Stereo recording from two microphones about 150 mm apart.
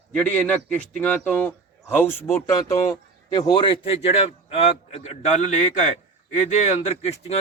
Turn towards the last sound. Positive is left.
turn(degrees=45)  # may be behind; listen again after turning